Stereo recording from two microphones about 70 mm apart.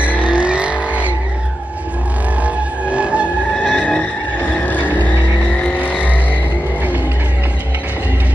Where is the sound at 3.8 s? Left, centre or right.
Centre.